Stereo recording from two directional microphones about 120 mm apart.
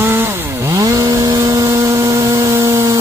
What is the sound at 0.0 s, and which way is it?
Chainsaw, 20° right (ahead or behind).